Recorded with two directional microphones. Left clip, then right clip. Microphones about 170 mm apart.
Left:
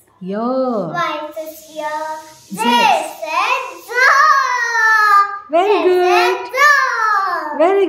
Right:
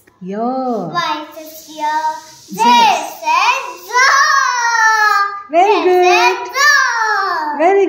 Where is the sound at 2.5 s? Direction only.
20° left (ahead or behind).